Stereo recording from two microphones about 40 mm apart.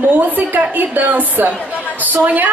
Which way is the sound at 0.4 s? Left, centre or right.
Right.